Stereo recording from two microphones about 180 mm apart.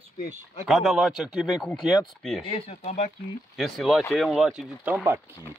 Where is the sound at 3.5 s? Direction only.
Centre (ahead or behind).